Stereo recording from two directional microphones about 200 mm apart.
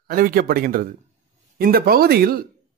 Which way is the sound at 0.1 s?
45° right (ahead or behind).